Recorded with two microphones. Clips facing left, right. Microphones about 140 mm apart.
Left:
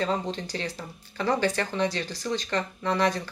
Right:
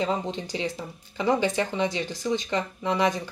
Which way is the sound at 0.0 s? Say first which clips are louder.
Right 1 dB; 15° right (ahead or behind).